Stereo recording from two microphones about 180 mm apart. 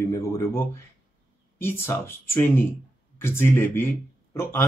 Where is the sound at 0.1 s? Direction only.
15° left (ahead or behind).